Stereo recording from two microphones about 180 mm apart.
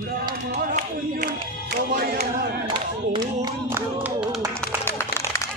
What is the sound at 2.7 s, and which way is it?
Speech, 25° right (ahead or behind).